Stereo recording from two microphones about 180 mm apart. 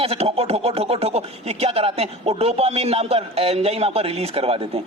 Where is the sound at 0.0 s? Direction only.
35° right (ahead or behind).